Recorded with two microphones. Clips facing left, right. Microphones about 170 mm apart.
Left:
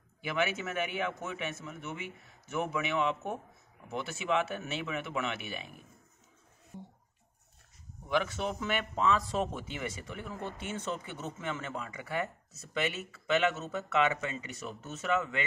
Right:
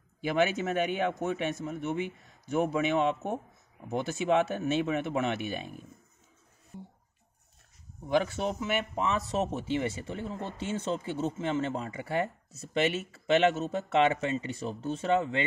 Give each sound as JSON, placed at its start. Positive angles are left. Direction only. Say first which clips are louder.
{"t": 0.6, "sound": "speech", "louder": "right 5 dB", "side_deg": -35}
{"t": 4.3, "sound": "speech", "louder": "right 5 dB", "side_deg": -35}
{"t": 8.2, "sound": "speech", "louder": "right 2 dB", "side_deg": -30}
{"t": 8.5, "sound": "a man's voice", "louder": "right 2 dB", "side_deg": -15}